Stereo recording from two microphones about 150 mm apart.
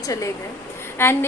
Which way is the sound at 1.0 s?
15° left (ahead or behind).